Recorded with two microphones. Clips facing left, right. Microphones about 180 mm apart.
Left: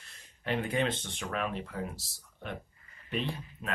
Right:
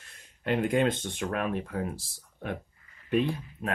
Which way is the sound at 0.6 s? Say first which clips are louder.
Right 6 dB; 50° right (ahead or behind).